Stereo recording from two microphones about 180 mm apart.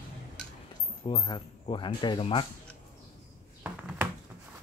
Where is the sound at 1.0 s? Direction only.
25° left (ahead or behind).